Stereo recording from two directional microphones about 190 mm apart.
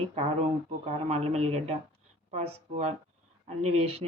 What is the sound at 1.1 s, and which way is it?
Speech, 35° right (ahead or behind).